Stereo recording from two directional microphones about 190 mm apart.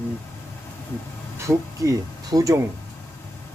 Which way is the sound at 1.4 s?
15° right (ahead or behind).